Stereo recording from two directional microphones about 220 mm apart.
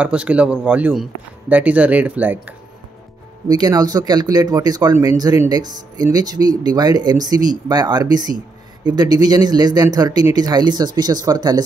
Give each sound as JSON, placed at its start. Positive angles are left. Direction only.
{"t": 0.0, "sound": "a man's voice", "side_deg": -5}